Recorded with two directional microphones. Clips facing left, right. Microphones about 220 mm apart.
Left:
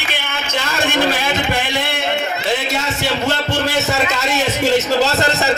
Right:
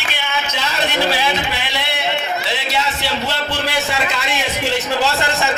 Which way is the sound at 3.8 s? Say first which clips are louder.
Left 3 dB; 45° left (ahead or behind).